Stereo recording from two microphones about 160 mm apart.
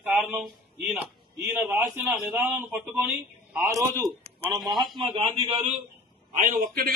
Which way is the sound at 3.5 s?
15° right (ahead or behind).